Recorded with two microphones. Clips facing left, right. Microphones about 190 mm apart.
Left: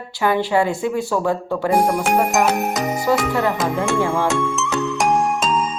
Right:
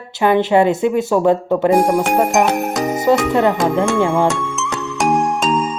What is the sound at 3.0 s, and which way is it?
Speech, 20° right (ahead or behind).